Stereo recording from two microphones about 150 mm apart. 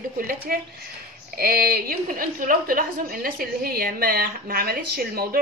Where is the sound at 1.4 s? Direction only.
80° right.